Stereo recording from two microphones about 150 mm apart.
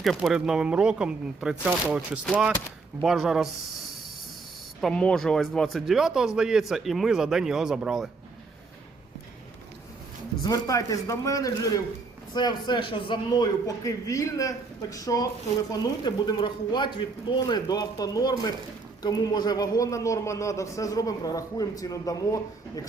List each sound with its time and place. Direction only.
0.0 s speech: 5° right (ahead or behind)
4.8 s speech: 5° left (ahead or behind)
10.4 s a man's voice: 20° left (ahead or behind)